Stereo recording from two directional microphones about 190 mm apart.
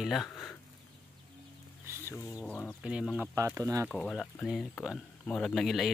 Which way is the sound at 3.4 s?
15° right (ahead or behind).